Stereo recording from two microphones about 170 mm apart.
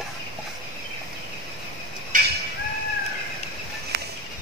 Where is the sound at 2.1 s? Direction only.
50° right (ahead or behind).